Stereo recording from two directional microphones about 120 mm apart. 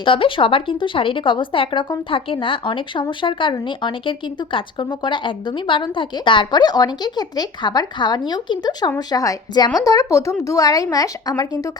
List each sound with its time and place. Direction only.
0.0 s a woman's voice: 45° left (ahead or behind); by 11.7 s 30° left (ahead or behind)